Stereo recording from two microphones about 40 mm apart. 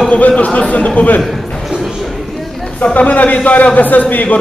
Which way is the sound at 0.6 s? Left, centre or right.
Left.